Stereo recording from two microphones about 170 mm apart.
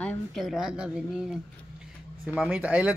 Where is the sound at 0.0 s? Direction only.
5° left (ahead or behind).